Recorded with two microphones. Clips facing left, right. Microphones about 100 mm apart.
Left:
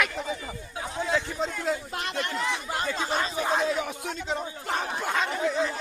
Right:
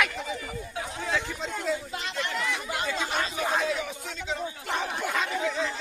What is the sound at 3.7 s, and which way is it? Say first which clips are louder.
Speech: left 2 dB; 50° left (ahead or behind).